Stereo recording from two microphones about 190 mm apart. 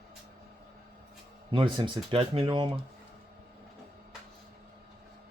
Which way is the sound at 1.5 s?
25° right (ahead or behind).